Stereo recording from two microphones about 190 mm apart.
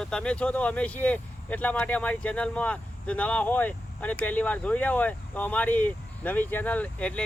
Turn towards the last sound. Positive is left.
turn(degrees=5)  # may be behind; listen again after turning